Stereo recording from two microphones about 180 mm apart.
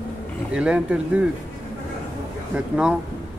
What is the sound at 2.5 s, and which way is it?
Speech, 5° right (ahead or behind).